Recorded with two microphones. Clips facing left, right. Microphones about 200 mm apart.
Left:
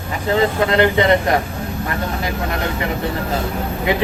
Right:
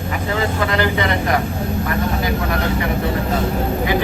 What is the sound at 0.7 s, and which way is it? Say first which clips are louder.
Speech: left 7 dB; 25° left (ahead or behind).